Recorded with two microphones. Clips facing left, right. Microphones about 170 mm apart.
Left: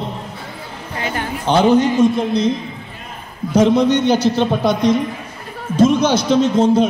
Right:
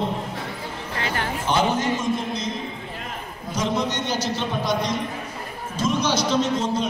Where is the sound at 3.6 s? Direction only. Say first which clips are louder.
Left 12 dB; 60° left (ahead or behind).